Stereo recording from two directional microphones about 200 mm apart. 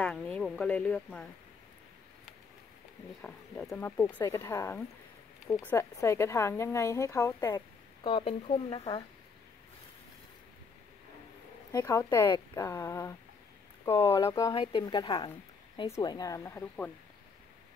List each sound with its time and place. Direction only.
0.0 s speech: 5° left (ahead or behind)
3.2 s speech: 5° left (ahead or behind); by 9.0 s 25° left (ahead or behind)
11.7 s speech: 15° left (ahead or behind)